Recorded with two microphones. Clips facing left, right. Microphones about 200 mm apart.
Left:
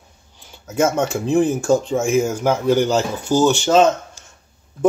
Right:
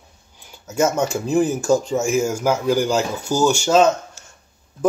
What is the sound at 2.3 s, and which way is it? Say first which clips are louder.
Speech: left 2 dB; 10° right (ahead or behind).